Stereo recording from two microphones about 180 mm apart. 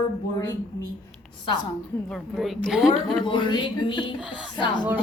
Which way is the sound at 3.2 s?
25° left (ahead or behind).